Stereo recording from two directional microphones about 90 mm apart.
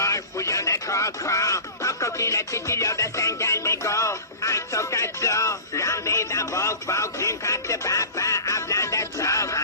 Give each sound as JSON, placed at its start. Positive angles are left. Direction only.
{"t": 0.0, "sound": "speech", "side_deg": 35}